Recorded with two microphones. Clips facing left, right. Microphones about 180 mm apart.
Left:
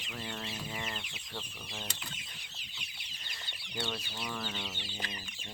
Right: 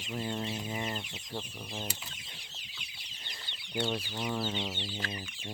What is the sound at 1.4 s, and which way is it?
Chicken, 10° right (ahead or behind).